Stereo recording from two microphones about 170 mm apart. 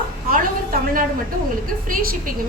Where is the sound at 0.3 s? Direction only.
55° right (ahead or behind).